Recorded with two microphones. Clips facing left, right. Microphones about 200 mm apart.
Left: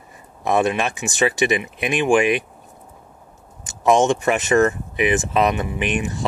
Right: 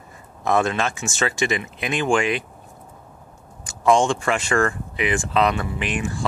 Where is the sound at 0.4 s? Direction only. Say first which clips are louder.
Left 2 dB; 15° left (ahead or behind).